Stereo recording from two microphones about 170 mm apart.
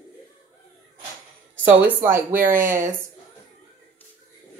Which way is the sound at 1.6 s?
10° right (ahead or behind).